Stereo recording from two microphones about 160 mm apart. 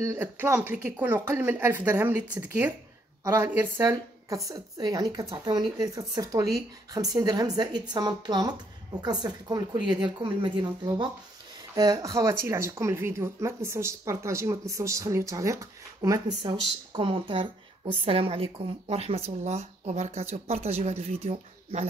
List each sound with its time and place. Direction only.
0.0 s a woman's voice: 15° right (ahead or behind); by 21.8 s 40° right (ahead or behind)